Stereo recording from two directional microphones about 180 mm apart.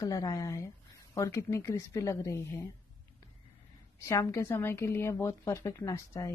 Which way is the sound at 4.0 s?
15° left (ahead or behind).